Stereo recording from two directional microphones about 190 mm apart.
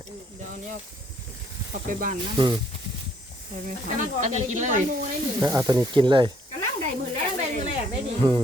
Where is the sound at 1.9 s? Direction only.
45° right (ahead or behind).